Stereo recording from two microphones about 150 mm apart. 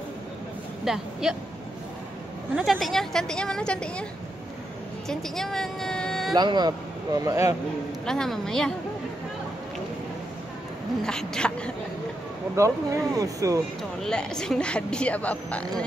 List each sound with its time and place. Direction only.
0.8 s a woman's voice: 5° right (ahead or behind)
2.5 s a woman's voice: centre (ahead or behind)
5.0 s speech: 5° left (ahead or behind)
6.3 s speech: 30° right (ahead or behind)
8.0 s a woman's voice: 5° left (ahead or behind)
11.1 s a woman's voice: 5° left (ahead or behind)
12.5 s speech: 20° right (ahead or behind)
13.9 s speech: 5° left (ahead or behind)